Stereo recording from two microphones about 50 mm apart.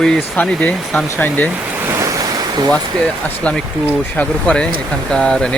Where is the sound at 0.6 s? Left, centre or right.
Left.